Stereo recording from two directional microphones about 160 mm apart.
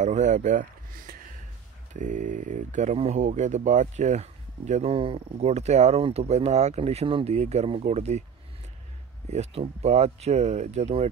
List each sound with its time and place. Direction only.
0.0 s speech: 50° right (ahead or behind)
9.3 s speech: 40° right (ahead or behind)